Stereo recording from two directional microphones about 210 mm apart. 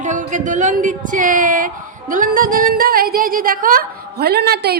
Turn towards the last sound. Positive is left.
turn(degrees=-50)  # may be behind; listen again after turning